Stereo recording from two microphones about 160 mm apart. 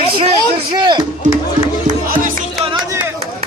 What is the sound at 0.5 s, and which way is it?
Speech, 30° right (ahead or behind).